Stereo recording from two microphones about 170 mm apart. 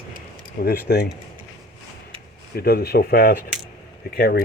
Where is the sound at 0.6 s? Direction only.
65° left (ahead or behind).